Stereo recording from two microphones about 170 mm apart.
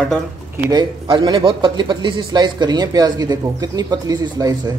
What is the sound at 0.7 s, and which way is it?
A man's voice, 25° right (ahead or behind).